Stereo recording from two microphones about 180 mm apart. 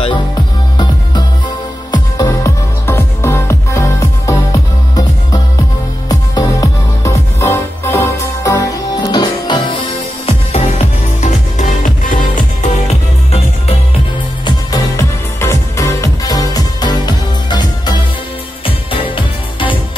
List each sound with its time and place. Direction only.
1.9 s music: 20° left (ahead or behind); by 13.7 s 35° left (ahead or behind)
14.4 s music: 20° left (ahead or behind)